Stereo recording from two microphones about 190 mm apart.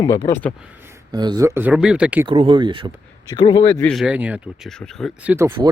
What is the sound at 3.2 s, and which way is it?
Speech, 20° left (ahead or behind).